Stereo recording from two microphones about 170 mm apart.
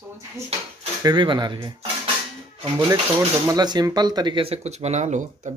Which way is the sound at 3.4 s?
25° right (ahead or behind).